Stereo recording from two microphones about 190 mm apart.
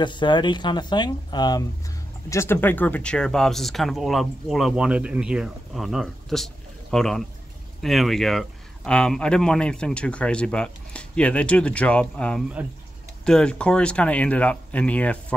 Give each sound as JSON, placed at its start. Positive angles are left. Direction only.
{"t": 0.0, "sound": "speech", "side_deg": 25}